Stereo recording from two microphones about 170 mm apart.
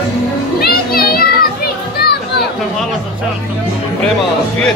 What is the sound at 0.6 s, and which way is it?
Children playing, 65° left (ahead or behind).